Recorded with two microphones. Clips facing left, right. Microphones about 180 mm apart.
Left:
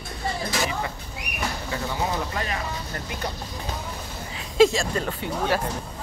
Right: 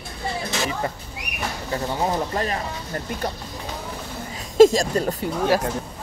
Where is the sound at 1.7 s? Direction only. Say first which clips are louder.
Right 5 dB; 35° right (ahead or behind).